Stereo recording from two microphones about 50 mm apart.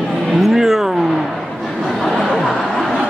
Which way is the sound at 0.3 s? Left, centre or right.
Centre.